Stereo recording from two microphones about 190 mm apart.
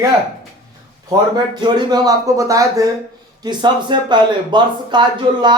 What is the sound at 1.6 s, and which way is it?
Speech, 20° right (ahead or behind).